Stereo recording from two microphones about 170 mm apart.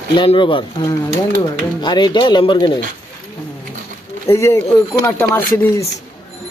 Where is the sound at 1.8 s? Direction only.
25° left (ahead or behind).